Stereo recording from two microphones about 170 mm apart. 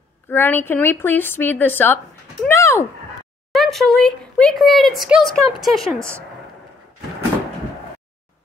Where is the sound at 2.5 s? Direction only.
15° left (ahead or behind).